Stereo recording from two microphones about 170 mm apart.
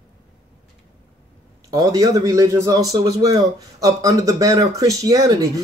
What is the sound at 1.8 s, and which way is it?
A man's voice, 20° right (ahead or behind).